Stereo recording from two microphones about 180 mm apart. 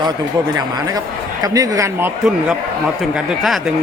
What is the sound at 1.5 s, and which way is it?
Speech, 20° right (ahead or behind).